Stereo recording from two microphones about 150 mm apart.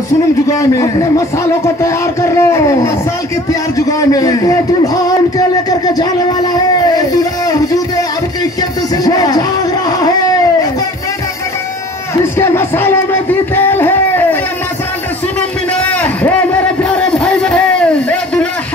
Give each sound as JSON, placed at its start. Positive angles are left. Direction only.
{"t": 0.5, "sound": "speech", "side_deg": 20}
{"t": 8.9, "sound": "speech", "side_deg": 25}
{"t": 12.4, "sound": "speech", "side_deg": 15}
{"t": 15.7, "sound": "a sound", "side_deg": 10}